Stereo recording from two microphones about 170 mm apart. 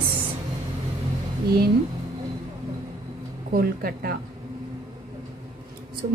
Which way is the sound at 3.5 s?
60° right (ahead or behind).